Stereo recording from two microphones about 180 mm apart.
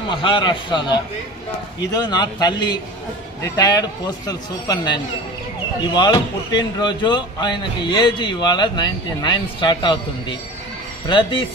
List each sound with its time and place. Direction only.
0.1 s speech: 25° left (ahead or behind)